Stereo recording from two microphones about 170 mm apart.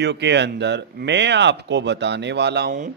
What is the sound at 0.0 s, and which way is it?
Speech, 90° right.